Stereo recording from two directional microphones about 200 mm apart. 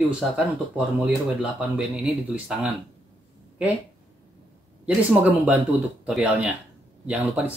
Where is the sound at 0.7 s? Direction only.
5° right (ahead or behind).